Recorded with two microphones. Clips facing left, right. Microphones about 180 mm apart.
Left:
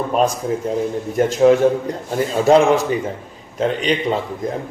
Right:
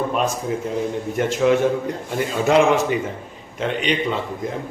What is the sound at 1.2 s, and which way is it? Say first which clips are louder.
Speech: left 5 dB; 35° left (ahead or behind).